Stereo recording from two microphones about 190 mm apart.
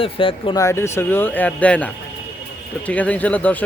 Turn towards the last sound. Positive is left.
turn(degrees=5)  # may be behind; listen again after turning